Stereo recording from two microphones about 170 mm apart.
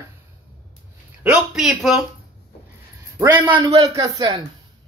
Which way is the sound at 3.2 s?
15° right (ahead or behind).